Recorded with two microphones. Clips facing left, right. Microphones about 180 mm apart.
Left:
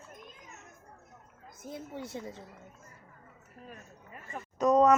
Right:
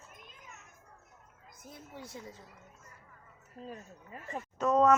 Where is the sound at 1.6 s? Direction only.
25° left (ahead or behind).